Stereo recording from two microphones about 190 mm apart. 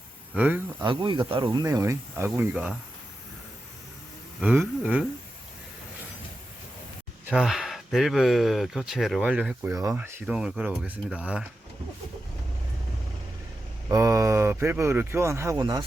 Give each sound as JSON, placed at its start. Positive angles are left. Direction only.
{"t": 0.3, "sound": "speech", "side_deg": -10}
{"t": 0.8, "sound": "speech", "side_deg": -25}
{"t": 4.4, "sound": "speech", "side_deg": -5}
{"t": 7.3, "sound": "speech", "side_deg": 0}
{"t": 13.8, "sound": "speech", "side_deg": -15}